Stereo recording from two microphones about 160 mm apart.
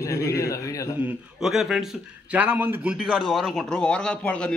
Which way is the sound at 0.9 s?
5° right (ahead or behind).